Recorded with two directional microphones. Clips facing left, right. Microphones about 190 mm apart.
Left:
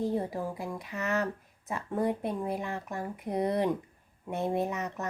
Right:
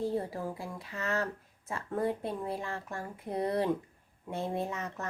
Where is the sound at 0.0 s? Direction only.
15° left (ahead or behind).